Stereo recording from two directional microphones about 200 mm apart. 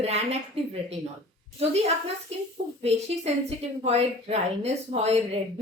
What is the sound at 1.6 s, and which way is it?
A woman's voice, 30° right (ahead or behind).